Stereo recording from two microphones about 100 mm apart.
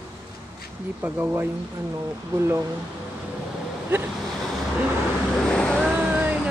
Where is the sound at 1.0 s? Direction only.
20° right (ahead or behind).